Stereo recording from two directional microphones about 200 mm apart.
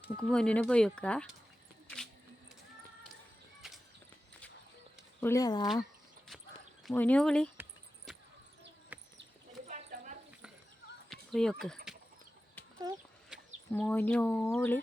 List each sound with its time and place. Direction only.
0.2 s speech: 5° left (ahead or behind)
3.6 s a sound: centre (ahead or behind)
5.2 s speech: 15° left (ahead or behind)
6.8 s speech: 5° left (ahead or behind)
7.5 s a sound: 10° right (ahead or behind)
8.9 s bird: 10° right (ahead or behind)
11.1 s a sound: 5° left (ahead or behind)
11.6 s speech: 5° left (ahead or behind)
12.8 s chicken: 20° right (ahead or behind)
13.7 s speech: 10° left (ahead or behind)